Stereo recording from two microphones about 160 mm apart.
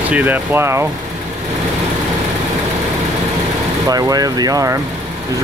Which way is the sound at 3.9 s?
25° right (ahead or behind).